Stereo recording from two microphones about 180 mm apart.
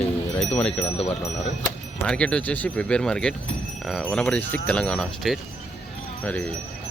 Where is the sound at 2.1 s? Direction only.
5° left (ahead or behind).